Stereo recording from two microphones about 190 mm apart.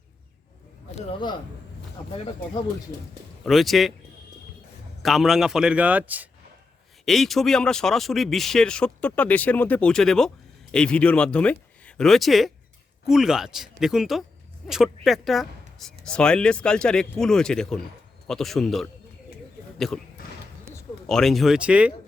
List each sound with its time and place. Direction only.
0.9 s a man's voice: 30° left (ahead or behind)
3.4 s speech: centre (ahead or behind)
5.0 s speech: centre (ahead or behind)
21.1 s speech: centre (ahead or behind)